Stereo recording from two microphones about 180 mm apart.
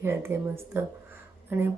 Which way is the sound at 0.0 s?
15° right (ahead or behind).